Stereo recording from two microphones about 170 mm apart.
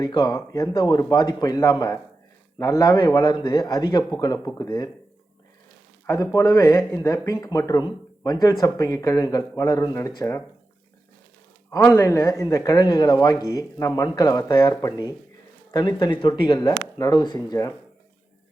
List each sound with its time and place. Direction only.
0.0 s speech: 25° left (ahead or behind)
6.1 s speech: 20° left (ahead or behind)
11.9 s speech: 20° left (ahead or behind)